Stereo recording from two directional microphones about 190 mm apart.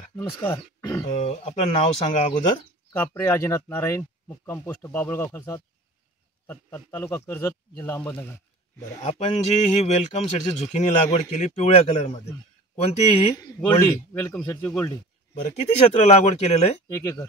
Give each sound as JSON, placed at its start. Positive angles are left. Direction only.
{"t": 0.1, "sound": "speech", "side_deg": 10}
{"t": 1.1, "sound": "a man's voice", "side_deg": 35}
{"t": 3.2, "sound": "a man's voice", "side_deg": 10}
{"t": 9.0, "sound": "a man's voice", "side_deg": 35}
{"t": 13.6, "sound": "a man's voice", "side_deg": 15}
{"t": 15.9, "sound": "a man's voice", "side_deg": 35}
{"t": 16.9, "sound": "a man's voice", "side_deg": 15}